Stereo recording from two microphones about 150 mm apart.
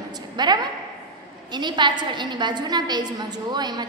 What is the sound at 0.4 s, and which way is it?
A woman's voice, 30° right (ahead or behind).